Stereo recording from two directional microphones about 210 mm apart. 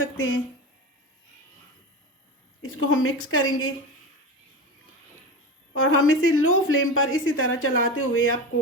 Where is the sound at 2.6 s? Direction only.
70° left (ahead or behind).